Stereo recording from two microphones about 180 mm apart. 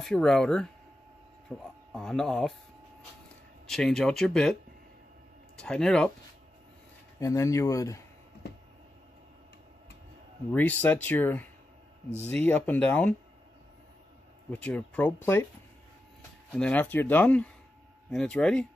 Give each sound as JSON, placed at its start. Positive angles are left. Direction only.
{"t": 0.0, "sound": "speech", "side_deg": 5}
{"t": 3.6, "sound": "speech", "side_deg": 5}
{"t": 5.6, "sound": "speech", "side_deg": 5}
{"t": 7.2, "sound": "speech", "side_deg": 15}
{"t": 10.5, "sound": "speech", "side_deg": 10}
{"t": 14.5, "sound": "speech", "side_deg": 5}
{"t": 16.5, "sound": "speech", "side_deg": 5}